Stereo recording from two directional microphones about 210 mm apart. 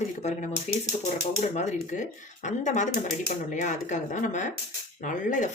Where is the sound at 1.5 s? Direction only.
35° left (ahead or behind).